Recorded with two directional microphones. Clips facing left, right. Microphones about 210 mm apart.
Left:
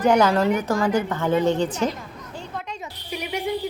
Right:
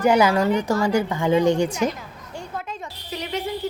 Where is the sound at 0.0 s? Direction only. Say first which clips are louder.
Even; 10° right (ahead or behind).